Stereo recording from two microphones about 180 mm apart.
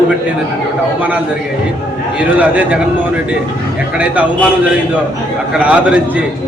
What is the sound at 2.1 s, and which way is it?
Speech, 5° right (ahead or behind).